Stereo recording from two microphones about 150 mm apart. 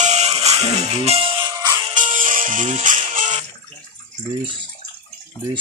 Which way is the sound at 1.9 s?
60° right (ahead or behind).